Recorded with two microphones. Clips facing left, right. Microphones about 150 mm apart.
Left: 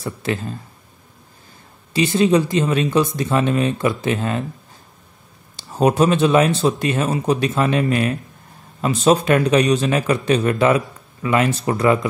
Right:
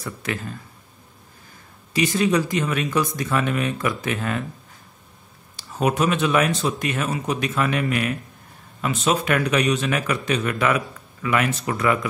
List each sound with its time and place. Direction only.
0.0 s speech: 30° left (ahead or behind)
2.0 s speech: 25° left (ahead or behind)
5.6 s speech: 30° left (ahead or behind)